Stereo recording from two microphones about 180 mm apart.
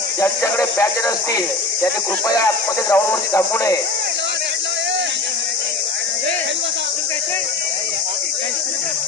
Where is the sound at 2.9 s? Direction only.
15° left (ahead or behind).